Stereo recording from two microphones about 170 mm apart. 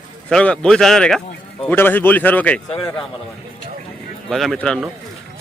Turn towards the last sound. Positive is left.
turn(degrees=5)  # may be behind; listen again after turning